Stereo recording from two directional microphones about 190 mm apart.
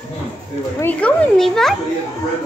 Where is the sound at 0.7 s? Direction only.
10° left (ahead or behind).